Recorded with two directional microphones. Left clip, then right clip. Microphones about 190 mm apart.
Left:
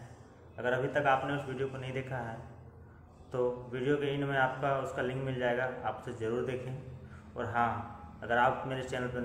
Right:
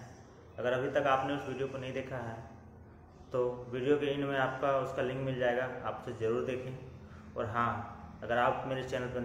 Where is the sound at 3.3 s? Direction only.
5° left (ahead or behind).